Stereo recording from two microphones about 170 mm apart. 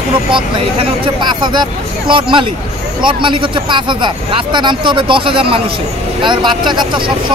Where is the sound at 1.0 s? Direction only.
25° right (ahead or behind).